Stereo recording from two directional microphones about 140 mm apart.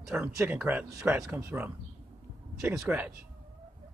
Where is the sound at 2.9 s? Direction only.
10° right (ahead or behind).